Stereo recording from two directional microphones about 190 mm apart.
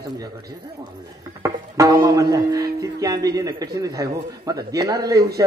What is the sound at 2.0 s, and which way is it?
Speech, 20° right (ahead or behind).